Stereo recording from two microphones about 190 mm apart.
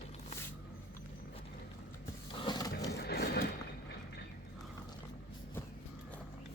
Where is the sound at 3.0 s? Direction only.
55° left (ahead or behind).